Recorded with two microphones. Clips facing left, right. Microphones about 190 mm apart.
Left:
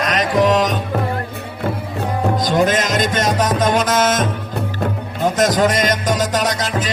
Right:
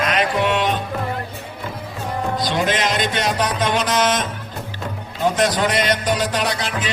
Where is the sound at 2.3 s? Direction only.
45° left (ahead or behind).